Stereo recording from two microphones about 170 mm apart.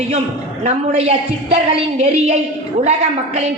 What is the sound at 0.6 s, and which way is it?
A woman's voice, 35° right (ahead or behind).